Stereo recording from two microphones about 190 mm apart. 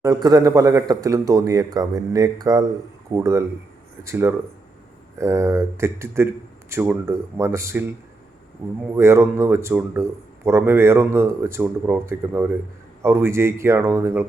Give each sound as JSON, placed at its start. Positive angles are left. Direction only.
{"t": 0.0, "sound": "speech", "side_deg": -20}